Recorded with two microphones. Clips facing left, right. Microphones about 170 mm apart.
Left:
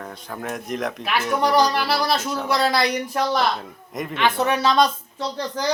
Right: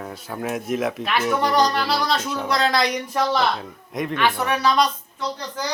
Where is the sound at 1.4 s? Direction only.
10° left (ahead or behind).